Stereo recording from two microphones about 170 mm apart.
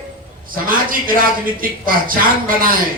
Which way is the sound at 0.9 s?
55° right (ahead or behind).